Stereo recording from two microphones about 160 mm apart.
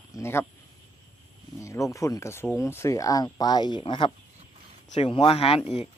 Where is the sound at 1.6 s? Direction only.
20° left (ahead or behind); by 5.6 s 35° left (ahead or behind).